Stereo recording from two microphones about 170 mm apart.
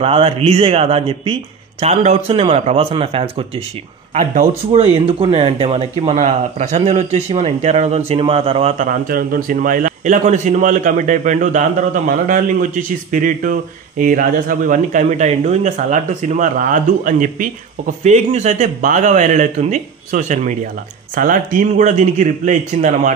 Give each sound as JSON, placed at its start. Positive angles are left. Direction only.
{"t": 0.0, "sound": "speech", "side_deg": -35}
{"t": 4.1, "sound": "speech", "side_deg": -45}
{"t": 4.6, "sound": "speech", "side_deg": -35}
{"t": 8.7, "sound": "a man's voice", "side_deg": -55}